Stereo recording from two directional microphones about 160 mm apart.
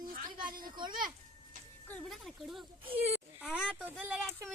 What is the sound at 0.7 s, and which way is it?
Speech, 30° right (ahead or behind).